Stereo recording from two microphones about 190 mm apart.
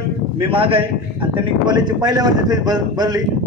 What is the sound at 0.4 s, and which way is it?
Speech, 30° right (ahead or behind).